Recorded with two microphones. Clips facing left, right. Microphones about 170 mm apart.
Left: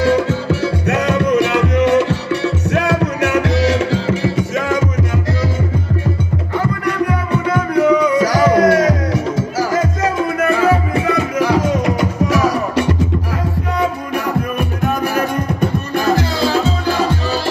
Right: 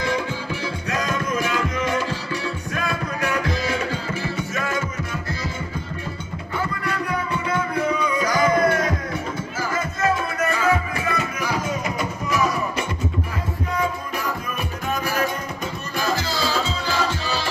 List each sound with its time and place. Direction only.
0.0 s music: 70° left (ahead or behind); by 4.8 s 90° left
7.4 s music: 75° left (ahead or behind)
11.1 s music: 80° left
14.9 s music: 55° left (ahead or behind)